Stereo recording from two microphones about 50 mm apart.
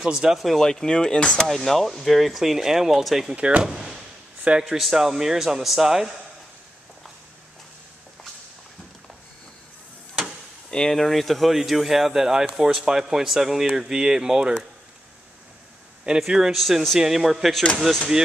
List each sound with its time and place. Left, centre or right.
0.0 s speech: centre
0.6 s speech: centre
1.5 s speech: centre
3.3 s speech: right
3.6 s a sound: centre
4.6 s speech: centre
10.7 s speech: centre
16.2 s speech: centre
16.5 s speech: centre